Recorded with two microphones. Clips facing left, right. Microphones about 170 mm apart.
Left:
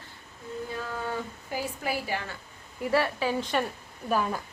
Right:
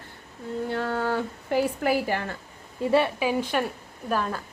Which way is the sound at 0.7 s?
70° right (ahead or behind).